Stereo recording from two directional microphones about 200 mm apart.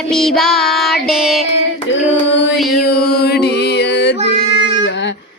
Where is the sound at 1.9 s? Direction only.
65° left (ahead or behind).